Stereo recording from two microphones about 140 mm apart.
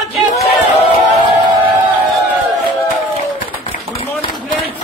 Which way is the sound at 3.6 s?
40° left (ahead or behind).